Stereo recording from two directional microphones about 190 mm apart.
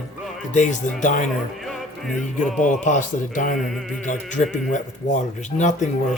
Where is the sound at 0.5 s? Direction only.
40° left (ahead or behind).